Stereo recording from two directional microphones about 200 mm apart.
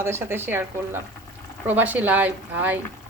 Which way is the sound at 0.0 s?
10° right (ahead or behind).